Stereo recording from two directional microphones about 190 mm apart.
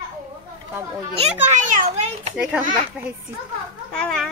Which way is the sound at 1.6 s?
35° right (ahead or behind).